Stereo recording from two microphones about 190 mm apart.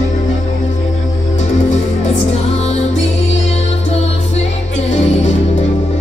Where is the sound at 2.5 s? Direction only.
35° left (ahead or behind).